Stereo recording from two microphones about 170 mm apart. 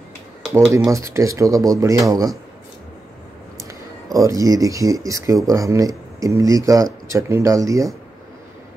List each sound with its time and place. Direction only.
0.4 s speech: centre (ahead or behind)
0.7 s speech: 20° right (ahead or behind)
3.5 s speech: 20° right (ahead or behind)